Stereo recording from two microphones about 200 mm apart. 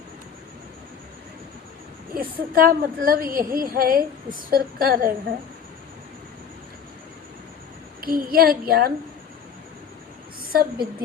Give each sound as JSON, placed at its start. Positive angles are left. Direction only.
{"t": 2.1, "sound": "a woman's voice", "side_deg": -45}
{"t": 8.0, "sound": "a woman's voice", "side_deg": -45}
{"t": 10.4, "sound": "a woman's voice", "side_deg": -50}